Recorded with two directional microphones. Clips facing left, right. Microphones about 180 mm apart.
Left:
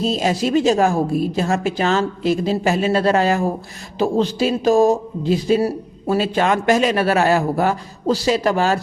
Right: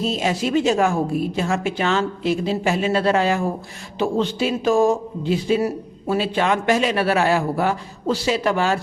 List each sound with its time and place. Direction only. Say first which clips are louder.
0.0 s a man's voice: left 3 dB; 40° left (ahead or behind)